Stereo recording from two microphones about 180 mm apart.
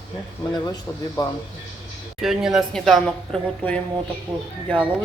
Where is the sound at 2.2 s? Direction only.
Centre (ahead or behind).